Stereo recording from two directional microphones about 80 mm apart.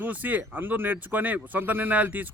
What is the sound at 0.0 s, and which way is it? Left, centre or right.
Speech, right.